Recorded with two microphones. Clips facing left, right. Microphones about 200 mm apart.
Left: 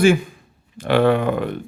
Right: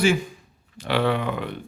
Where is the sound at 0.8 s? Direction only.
50° left (ahead or behind).